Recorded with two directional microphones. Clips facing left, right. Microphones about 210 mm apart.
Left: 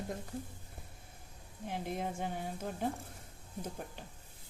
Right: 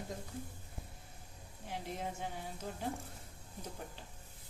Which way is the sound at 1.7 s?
50° left (ahead or behind).